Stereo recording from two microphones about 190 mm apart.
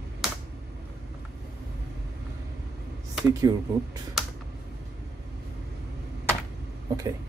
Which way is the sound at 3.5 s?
20° right (ahead or behind).